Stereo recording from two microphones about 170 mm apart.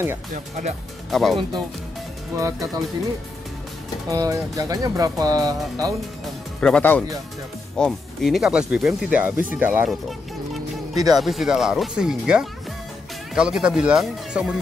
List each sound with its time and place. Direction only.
0.3 s speech: 45° right (ahead or behind)
1.1 s speech: centre (ahead or behind)
2.3 s speech: 20° right (ahead or behind)
4.1 s speech: 20° right (ahead or behind)
6.6 s speech: 10° left (ahead or behind); by 9.8 s 10° right (ahead or behind)
11.1 s speech: centre (ahead or behind)